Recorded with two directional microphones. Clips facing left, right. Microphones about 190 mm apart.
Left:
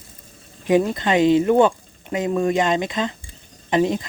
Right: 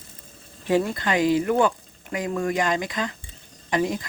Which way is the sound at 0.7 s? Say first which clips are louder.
Left 4 dB; 20° left (ahead or behind).